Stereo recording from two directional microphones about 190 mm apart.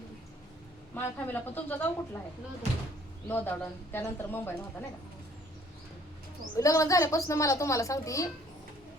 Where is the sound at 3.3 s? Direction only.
10° left (ahead or behind).